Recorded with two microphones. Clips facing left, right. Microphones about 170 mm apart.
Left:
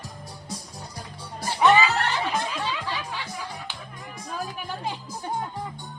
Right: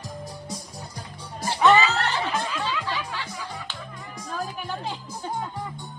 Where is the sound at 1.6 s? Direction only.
10° left (ahead or behind).